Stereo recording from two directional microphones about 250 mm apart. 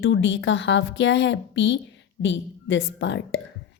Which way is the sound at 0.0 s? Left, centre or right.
Left.